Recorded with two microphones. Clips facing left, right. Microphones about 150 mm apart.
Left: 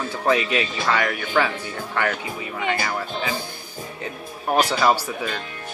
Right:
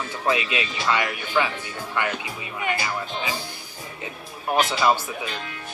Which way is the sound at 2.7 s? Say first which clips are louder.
Left 2 dB; 50° left (ahead or behind).